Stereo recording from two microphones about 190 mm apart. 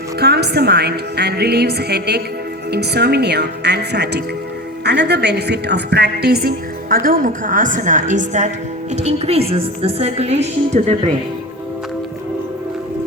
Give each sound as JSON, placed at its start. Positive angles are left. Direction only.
{"t": 0.2, "sound": "a woman's voice", "side_deg": -60}